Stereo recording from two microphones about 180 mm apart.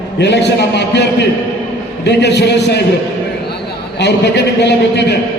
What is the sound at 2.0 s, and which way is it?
Speech, 70° left (ahead or behind).